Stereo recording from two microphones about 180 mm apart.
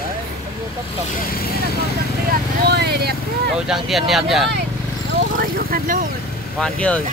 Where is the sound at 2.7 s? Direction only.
65° right (ahead or behind).